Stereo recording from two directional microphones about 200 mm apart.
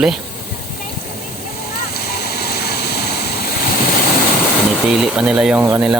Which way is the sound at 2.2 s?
55° left (ahead or behind).